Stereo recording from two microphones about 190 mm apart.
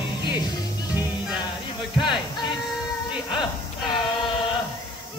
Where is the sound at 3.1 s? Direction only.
5° right (ahead or behind).